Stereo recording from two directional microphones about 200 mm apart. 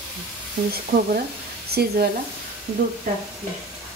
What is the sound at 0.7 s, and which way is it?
Speech, 45° right (ahead or behind).